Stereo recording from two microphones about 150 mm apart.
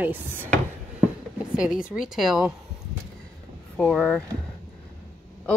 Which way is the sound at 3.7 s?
5° left (ahead or behind).